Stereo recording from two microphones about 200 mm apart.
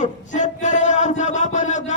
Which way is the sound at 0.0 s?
35° left (ahead or behind).